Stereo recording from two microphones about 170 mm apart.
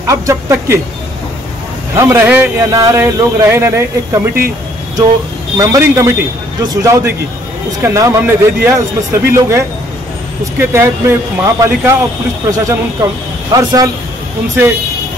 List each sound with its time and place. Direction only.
0.0 s a man's voice: 15° right (ahead or behind)
2.0 s a man's voice: 15° right (ahead or behind)
5.6 s a man's voice: 20° right (ahead or behind)